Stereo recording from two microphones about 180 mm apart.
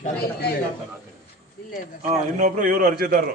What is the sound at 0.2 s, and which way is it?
Speech, 60° left (ahead or behind).